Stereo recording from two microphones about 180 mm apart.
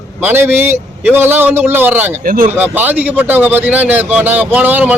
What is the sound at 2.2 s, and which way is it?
Speech, 50° right (ahead or behind).